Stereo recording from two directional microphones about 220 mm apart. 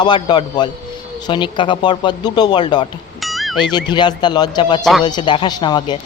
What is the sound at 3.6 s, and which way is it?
Speech, 20° left (ahead or behind).